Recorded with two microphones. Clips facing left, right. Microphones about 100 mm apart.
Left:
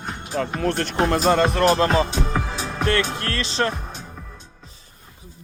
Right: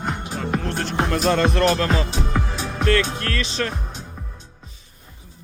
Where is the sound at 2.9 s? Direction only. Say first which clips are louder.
Right 2 dB; 30° left (ahead or behind).